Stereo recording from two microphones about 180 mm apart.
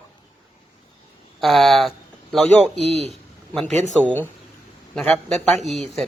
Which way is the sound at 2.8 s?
35° right (ahead or behind).